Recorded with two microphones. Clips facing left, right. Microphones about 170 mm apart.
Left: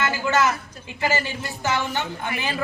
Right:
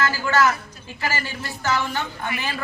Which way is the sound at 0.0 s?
20° left (ahead or behind).